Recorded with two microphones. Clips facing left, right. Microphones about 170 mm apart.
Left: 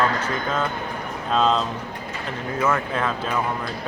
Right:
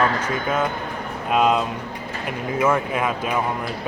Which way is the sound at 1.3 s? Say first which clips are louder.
Right 2 dB; 10° right (ahead or behind).